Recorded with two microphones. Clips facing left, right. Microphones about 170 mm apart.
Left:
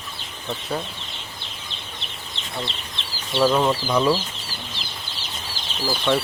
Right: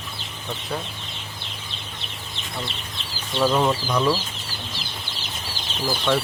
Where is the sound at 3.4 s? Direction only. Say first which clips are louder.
Left 1 dB; centre (ahead or behind).